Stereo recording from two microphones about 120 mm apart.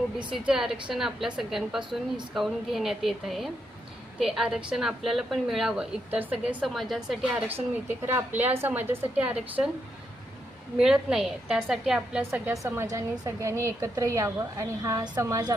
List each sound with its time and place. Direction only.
0.3 s a woman's voice: 5° right (ahead or behind)
7.3 s a woman's voice: 15° right (ahead or behind)
10.8 s a woman's voice: 5° right (ahead or behind)
12.3 s a woman's voice: 20° right (ahead or behind)